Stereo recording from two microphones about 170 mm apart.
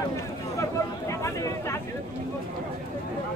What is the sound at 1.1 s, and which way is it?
Speech, 15° left (ahead or behind).